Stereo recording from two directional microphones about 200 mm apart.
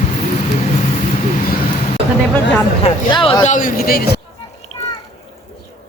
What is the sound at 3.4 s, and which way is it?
Speech, 40° left (ahead or behind).